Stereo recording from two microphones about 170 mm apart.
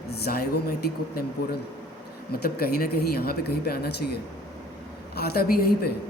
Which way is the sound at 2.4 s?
65° left (ahead or behind).